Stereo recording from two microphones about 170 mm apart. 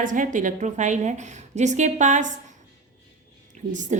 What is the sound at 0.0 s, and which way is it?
A woman's voice, 50° right (ahead or behind).